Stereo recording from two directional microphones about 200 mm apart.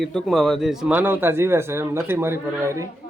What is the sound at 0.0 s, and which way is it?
Speech, centre (ahead or behind).